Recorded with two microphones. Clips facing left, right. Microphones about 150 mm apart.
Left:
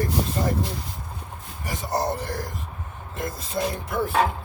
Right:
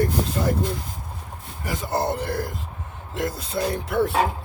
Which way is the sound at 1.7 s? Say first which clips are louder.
Right 1 dB; 60° right (ahead or behind).